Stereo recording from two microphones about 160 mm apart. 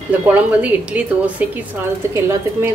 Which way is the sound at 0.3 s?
10° right (ahead or behind).